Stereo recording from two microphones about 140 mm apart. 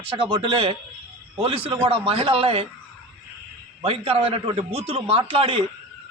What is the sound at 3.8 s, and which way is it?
Speech, 45° right (ahead or behind).